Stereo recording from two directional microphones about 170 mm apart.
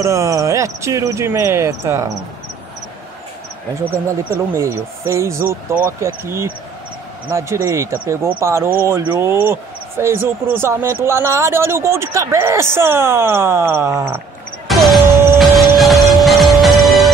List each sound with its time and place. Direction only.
0.0 s speech: 20° right (ahead or behind)
4.6 s speech: 15° right (ahead or behind)
14.7 s music: centre (ahead or behind)